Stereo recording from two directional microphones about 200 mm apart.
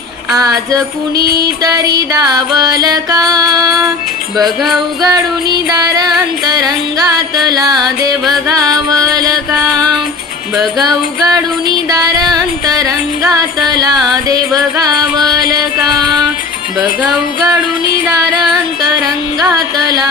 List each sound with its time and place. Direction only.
0.3 s music: 15° right (ahead or behind)
4.4 s music: centre (ahead or behind)
5.0 s music: 20° right (ahead or behind)
10.8 s music: 20° right (ahead or behind)
18.8 s music: 20° right (ahead or behind)